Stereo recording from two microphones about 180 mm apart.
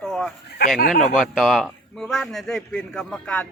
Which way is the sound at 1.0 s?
Centre (ahead or behind).